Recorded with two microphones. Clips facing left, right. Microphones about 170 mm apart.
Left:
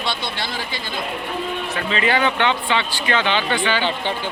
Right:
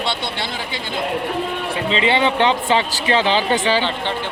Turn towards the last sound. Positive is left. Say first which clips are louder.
# right 3 dB
turn(degrees=-35)  # may be behind; listen again after turning